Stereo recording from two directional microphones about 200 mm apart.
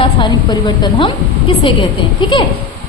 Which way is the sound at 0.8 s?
25° left (ahead or behind).